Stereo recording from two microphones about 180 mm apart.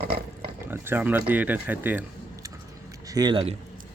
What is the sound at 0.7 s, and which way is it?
Speech, 10° right (ahead or behind).